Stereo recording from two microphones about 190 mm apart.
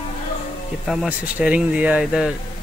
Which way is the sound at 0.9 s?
5° right (ahead or behind).